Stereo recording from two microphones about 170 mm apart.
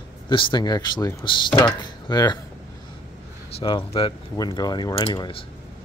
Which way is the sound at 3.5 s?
30° left (ahead or behind).